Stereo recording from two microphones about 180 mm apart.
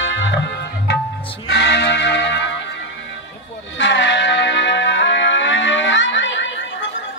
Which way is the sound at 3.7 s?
90° left.